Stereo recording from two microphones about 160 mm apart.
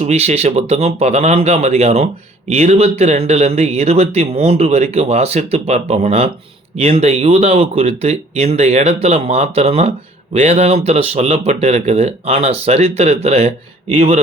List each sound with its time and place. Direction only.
0.0 s speech: 40° right (ahead or behind)